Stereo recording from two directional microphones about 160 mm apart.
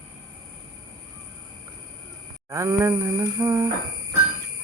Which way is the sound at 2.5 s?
15° right (ahead or behind).